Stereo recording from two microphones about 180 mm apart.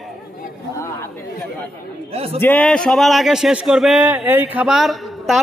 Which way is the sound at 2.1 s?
35° right (ahead or behind).